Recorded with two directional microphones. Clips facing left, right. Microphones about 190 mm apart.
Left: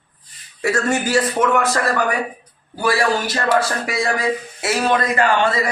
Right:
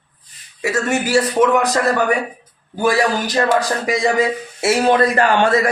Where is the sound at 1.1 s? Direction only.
15° right (ahead or behind).